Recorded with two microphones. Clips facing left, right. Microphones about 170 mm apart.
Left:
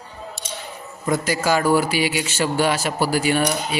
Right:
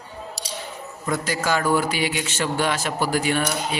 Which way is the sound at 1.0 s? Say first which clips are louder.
Left 4 dB; 10° left (ahead or behind).